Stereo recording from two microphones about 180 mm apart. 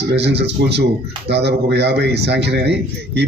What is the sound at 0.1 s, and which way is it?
A man's voice, 70° right (ahead or behind).